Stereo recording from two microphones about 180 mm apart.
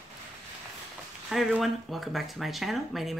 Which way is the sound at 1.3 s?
Centre (ahead or behind).